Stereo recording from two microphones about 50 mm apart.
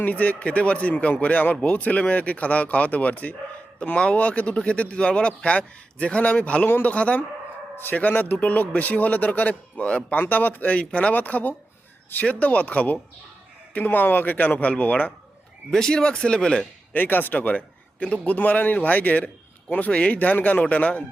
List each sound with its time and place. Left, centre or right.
0.0 s speech: left
10.2 s speech: left
15.7 s speech: centre
16.9 s speech: left